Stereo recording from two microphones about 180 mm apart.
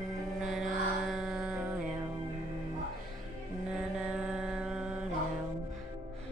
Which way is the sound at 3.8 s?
5° right (ahead or behind).